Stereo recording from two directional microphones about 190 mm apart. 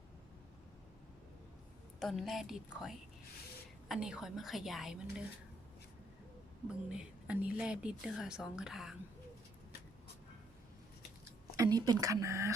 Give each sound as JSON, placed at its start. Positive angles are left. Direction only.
{"t": 2.0, "sound": "speech", "side_deg": 0}
{"t": 6.7, "sound": "speech", "side_deg": -5}
{"t": 11.5, "sound": "speech", "side_deg": -20}